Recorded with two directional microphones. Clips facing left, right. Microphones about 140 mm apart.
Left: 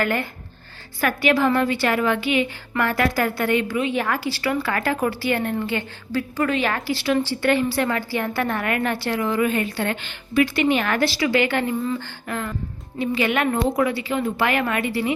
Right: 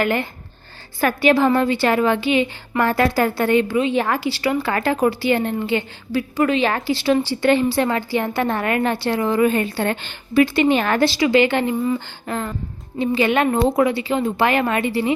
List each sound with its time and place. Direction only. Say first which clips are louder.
0.0 s a woman's voice: right 3 dB; 20° right (ahead or behind)